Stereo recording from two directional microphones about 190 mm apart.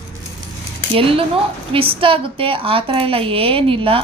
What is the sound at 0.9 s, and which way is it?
A woman's voice, 30° right (ahead or behind).